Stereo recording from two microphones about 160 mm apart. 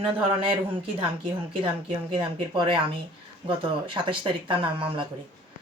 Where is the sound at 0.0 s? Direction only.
35° right (ahead or behind).